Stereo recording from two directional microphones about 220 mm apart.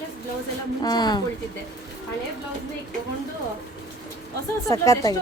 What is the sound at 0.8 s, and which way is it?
Speech, 20° left (ahead or behind).